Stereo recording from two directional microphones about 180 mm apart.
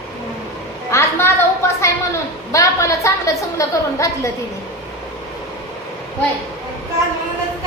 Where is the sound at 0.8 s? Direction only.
15° left (ahead or behind).